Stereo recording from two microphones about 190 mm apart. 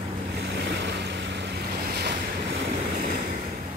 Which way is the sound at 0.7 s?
65° right (ahead or behind).